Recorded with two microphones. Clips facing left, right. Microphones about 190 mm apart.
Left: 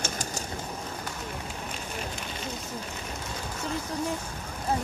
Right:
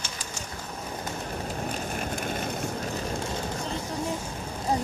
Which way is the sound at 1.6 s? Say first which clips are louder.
Right 5 dB; 50° right (ahead or behind).